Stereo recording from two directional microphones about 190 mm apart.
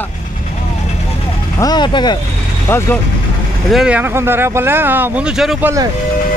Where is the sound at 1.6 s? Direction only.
20° left (ahead or behind).